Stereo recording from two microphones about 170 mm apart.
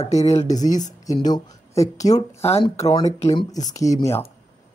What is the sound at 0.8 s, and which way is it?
Speech, 20° left (ahead or behind).